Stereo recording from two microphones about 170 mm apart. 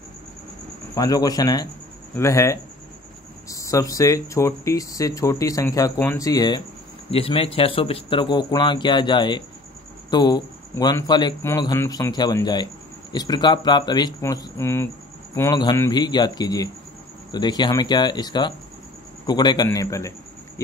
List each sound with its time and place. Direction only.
0.9 s speech: 20° left (ahead or behind)
7.1 s a man's voice: 35° left (ahead or behind); by 20.6 s 15° left (ahead or behind)